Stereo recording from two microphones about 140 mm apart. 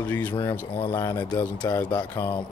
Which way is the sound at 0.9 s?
25° left (ahead or behind).